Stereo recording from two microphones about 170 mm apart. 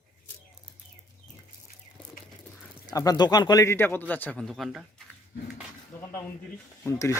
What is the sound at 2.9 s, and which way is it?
A man's voice, 25° left (ahead or behind).